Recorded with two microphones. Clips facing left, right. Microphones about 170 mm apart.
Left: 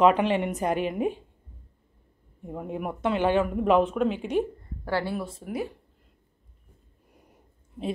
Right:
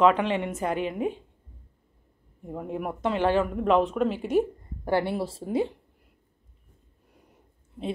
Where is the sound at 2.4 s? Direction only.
Centre (ahead or behind).